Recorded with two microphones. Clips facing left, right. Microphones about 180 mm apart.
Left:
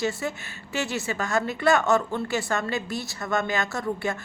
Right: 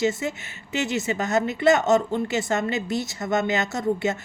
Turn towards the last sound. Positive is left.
turn(degrees=-20)  # may be behind; listen again after turning